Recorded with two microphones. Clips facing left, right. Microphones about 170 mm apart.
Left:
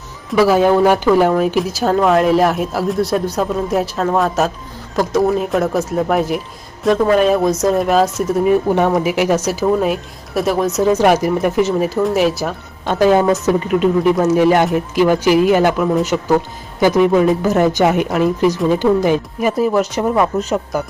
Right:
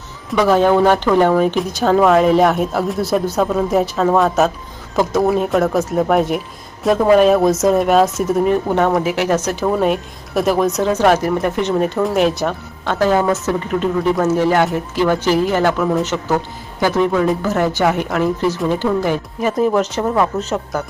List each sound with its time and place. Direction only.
0.3 s speech: 5° left (ahead or behind)
9.0 s speech: 15° left (ahead or behind)
12.8 s speech: 15° left (ahead or behind)